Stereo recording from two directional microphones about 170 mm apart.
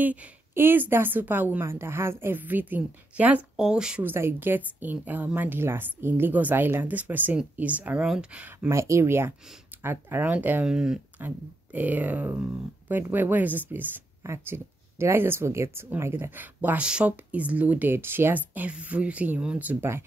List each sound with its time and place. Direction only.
0.0 s speech: 10° right (ahead or behind)
8.6 s speech: 15° right (ahead or behind)